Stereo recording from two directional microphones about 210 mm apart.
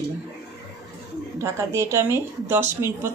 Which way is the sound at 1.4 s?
15° right (ahead or behind).